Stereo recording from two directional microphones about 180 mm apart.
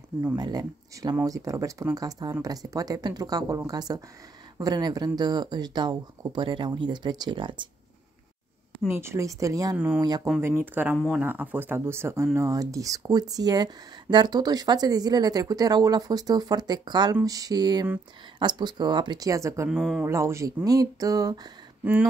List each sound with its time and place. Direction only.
0.4 s speech: 20° right (ahead or behind)
8.8 s speech: 15° right (ahead or behind)
19.7 s speech: centre (ahead or behind)
20.1 s speech: 15° right (ahead or behind)